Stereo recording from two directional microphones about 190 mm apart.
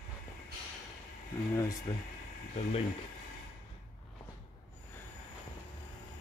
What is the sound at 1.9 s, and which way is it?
Speech, 25° left (ahead or behind).